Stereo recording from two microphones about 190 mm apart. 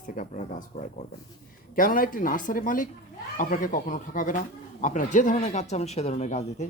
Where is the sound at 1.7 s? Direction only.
45° left (ahead or behind).